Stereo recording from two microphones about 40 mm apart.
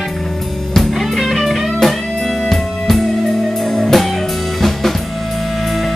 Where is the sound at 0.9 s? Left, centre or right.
Centre.